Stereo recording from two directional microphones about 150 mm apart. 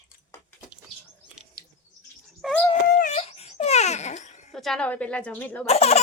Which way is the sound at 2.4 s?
Centre (ahead or behind).